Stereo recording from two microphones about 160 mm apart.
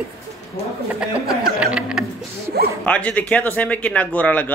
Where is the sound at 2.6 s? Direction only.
80° right.